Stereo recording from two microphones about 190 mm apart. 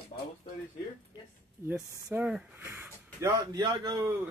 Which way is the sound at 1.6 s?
10° right (ahead or behind).